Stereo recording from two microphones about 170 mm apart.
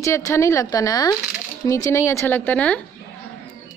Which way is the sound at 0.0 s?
15° left (ahead or behind).